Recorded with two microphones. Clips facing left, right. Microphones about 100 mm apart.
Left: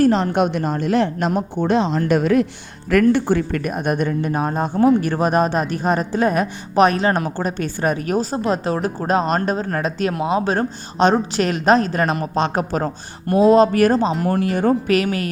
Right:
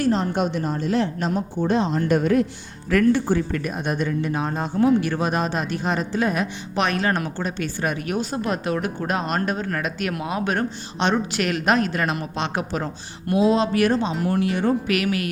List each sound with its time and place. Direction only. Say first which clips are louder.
0.1 s a woman's voice: left 4 dB; 70° left (ahead or behind); by 2.5 s 90° left
2.9 s speech: left 3 dB; 70° left (ahead or behind); by 15.3 s 35° left (ahead or behind)